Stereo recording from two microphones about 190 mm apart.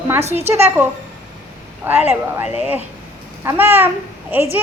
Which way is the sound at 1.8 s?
10° right (ahead or behind).